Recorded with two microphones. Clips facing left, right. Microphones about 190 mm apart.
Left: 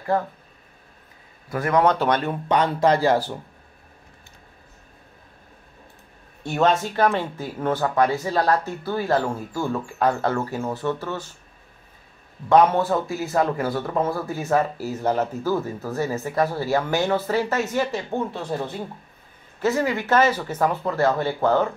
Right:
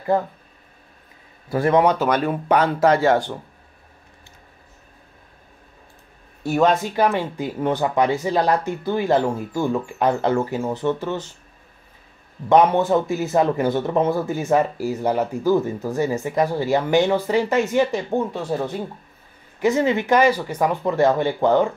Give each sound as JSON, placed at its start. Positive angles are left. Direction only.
{"t": 1.5, "sound": "speech", "side_deg": -25}
{"t": 1.8, "sound": "speech", "side_deg": -10}
{"t": 6.4, "sound": "a man's voice", "side_deg": -10}
{"t": 12.4, "sound": "a man's voice", "side_deg": -20}
{"t": 19.6, "sound": "a man's voice", "side_deg": -20}